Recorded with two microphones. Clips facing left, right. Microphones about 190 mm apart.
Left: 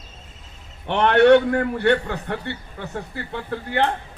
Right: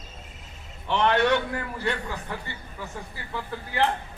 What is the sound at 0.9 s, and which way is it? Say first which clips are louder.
A man's voice: left 8 dB; 60° left (ahead or behind).